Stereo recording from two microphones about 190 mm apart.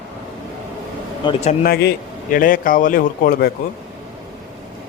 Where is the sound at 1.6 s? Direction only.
55° left (ahead or behind).